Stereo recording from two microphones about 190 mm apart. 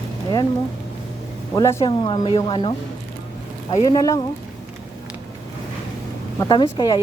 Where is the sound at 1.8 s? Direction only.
25° left (ahead or behind).